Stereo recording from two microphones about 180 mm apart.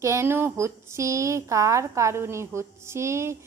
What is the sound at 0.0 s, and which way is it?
A woman's voice, 15° right (ahead or behind).